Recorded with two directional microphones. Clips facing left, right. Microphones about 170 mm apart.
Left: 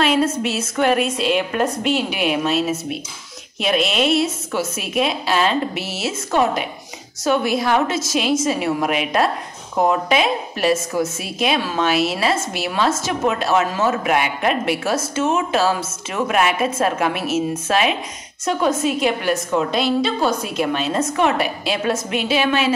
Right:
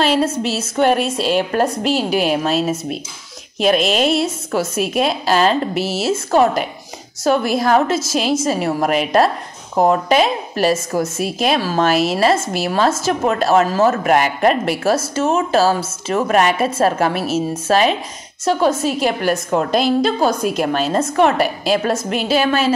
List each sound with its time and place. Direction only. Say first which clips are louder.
0.0 s a woman's voice: right 1 dB; 35° right (ahead or behind)